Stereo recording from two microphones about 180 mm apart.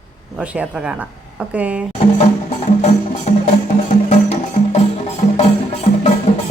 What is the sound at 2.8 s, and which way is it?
Music, 40° left (ahead or behind).